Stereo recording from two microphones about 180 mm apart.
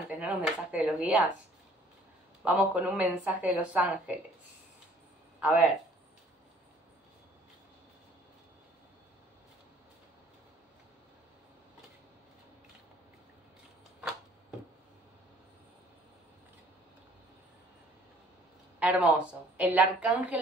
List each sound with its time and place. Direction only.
0.1 s a sound: 10° right (ahead or behind)
0.7 s a woman's voice: 5° right (ahead or behind)
2.4 s a woman's voice: 10° right (ahead or behind)
5.4 s speech: 10° right (ahead or behind)
18.8 s a woman's voice: 5° right (ahead or behind)